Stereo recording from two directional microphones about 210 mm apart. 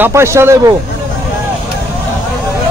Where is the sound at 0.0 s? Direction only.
15° right (ahead or behind).